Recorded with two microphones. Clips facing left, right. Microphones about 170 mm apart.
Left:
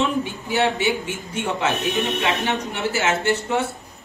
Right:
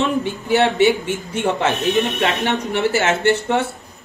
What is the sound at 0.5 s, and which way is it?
Speech, 65° right (ahead or behind).